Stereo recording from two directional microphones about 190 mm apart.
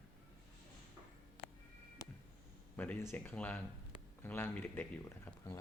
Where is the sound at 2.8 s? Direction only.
10° left (ahead or behind).